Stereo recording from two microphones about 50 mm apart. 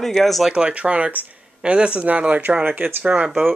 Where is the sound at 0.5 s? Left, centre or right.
Centre.